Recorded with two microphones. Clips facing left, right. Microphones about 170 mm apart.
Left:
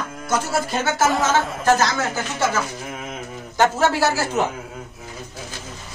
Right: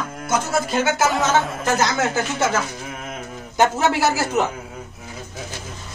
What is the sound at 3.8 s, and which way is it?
Speech, 15° right (ahead or behind).